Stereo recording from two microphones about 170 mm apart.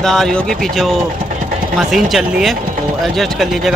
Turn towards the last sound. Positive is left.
turn(degrees=0)  # may be behind; listen again after turning